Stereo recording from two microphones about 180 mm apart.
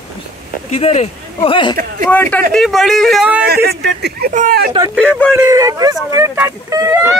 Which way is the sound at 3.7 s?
65° right (ahead or behind).